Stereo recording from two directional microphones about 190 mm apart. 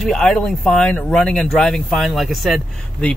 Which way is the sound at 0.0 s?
5° left (ahead or behind).